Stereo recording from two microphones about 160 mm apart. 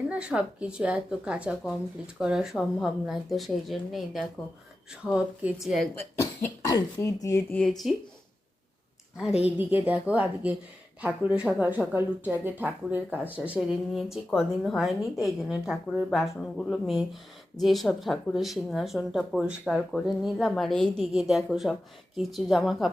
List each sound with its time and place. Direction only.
0.1 s a woman's voice: 5° right (ahead or behind)
6.7 s speech: 20° left (ahead or behind)
7.5 s speech: 5° left (ahead or behind)
9.1 s a woman's voice: 5° right (ahead or behind)